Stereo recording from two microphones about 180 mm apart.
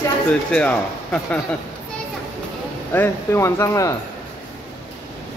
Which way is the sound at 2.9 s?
15° left (ahead or behind).